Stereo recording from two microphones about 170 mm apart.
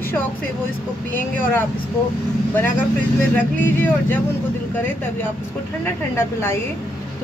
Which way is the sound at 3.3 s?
10° left (ahead or behind).